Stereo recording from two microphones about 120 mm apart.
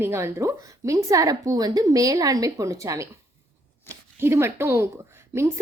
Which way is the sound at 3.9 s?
20° left (ahead or behind).